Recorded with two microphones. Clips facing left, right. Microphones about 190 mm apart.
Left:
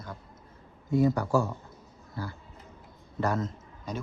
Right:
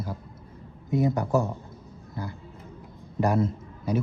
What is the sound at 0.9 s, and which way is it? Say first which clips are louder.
Speech: even; 20° right (ahead or behind).